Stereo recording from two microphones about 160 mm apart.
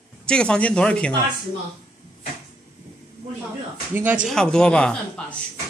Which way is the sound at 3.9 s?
10° right (ahead or behind).